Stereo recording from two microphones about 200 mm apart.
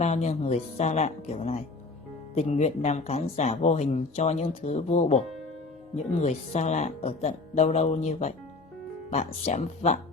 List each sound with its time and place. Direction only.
0.0 s speech: 35° left (ahead or behind)